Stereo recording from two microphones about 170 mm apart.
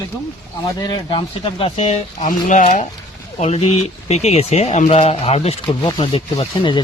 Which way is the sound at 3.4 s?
35° left (ahead or behind).